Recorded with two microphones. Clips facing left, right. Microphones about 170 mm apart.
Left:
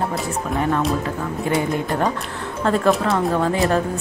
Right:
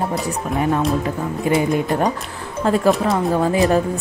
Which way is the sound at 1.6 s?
20° right (ahead or behind).